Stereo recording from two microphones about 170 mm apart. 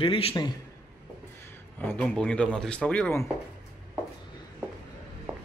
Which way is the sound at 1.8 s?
10° left (ahead or behind).